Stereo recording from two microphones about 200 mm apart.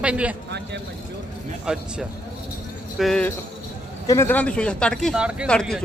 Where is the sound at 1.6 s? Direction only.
5° right (ahead or behind).